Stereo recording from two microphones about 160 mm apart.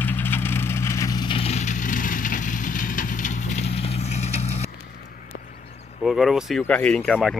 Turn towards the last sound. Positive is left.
turn(degrees=5)  # may be behind; listen again after turning